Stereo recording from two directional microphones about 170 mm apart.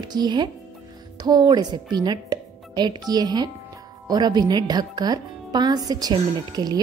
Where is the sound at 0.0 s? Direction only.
25° right (ahead or behind).